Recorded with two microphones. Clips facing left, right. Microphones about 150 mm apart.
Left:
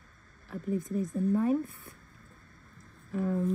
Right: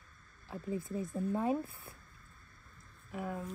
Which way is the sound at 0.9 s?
20° right (ahead or behind).